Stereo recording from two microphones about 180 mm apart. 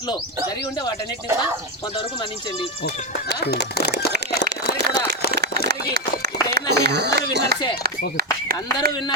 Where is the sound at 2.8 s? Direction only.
65° left (ahead or behind).